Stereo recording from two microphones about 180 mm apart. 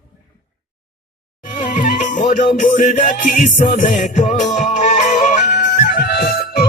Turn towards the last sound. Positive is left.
turn(degrees=60)  # may be behind; listen again after turning